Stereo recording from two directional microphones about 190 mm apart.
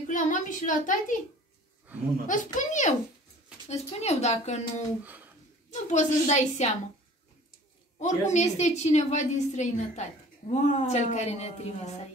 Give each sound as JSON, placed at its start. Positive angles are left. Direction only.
{"t": 0.0, "sound": "a woman's voice", "side_deg": 40}
{"t": 2.2, "sound": "a woman's voice", "side_deg": 40}
{"t": 5.0, "sound": "a sound", "side_deg": -10}
{"t": 5.7, "sound": "a woman's voice", "side_deg": 40}
{"t": 8.0, "sound": "a woman's voice", "side_deg": 35}